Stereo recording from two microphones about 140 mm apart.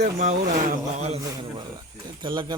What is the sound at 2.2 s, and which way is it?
Speech, 35° right (ahead or behind).